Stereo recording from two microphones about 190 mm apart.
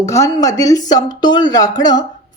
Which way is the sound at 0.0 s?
15° left (ahead or behind).